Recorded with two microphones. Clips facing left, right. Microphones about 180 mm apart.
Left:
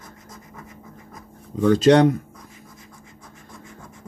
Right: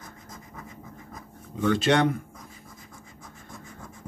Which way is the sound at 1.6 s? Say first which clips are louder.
Left 7 dB; 35° left (ahead or behind).